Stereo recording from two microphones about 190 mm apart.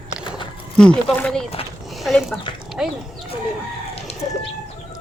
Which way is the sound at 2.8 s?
5° right (ahead or behind).